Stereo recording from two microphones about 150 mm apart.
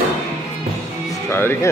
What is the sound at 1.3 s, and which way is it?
Speech, 15° left (ahead or behind).